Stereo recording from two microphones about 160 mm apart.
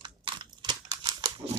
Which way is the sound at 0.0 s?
30° right (ahead or behind).